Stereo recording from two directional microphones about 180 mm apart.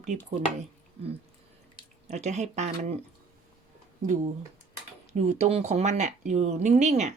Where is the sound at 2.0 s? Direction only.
40° right (ahead or behind).